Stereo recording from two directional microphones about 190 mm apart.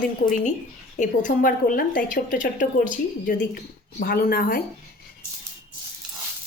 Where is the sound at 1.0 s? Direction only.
45° left (ahead or behind).